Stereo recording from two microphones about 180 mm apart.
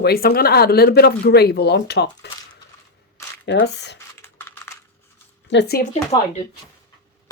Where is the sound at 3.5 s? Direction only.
75° left (ahead or behind).